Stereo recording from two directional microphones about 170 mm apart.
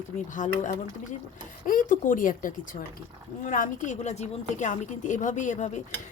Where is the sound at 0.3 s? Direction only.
50° left (ahead or behind).